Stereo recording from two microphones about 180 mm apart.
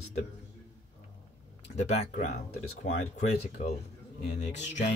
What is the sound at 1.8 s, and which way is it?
Speech, 40° left (ahead or behind).